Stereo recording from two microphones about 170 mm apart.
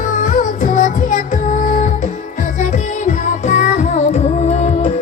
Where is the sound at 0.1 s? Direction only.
45° left (ahead or behind).